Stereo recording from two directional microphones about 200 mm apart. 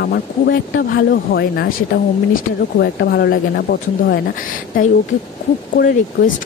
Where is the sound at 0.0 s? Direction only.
55° left (ahead or behind).